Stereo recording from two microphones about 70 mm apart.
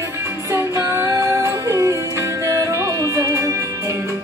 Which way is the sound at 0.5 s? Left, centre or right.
Right.